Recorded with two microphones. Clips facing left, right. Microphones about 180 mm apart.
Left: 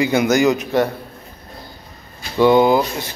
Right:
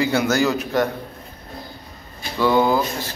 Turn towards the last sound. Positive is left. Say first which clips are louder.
# left 4 dB
turn(degrees=15)  # may be behind; listen again after turning